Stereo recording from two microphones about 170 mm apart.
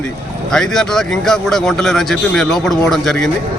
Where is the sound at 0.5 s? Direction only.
5° left (ahead or behind).